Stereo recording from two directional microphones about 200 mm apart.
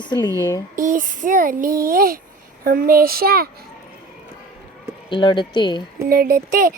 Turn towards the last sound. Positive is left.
turn(degrees=-45)  # may be behind; listen again after turning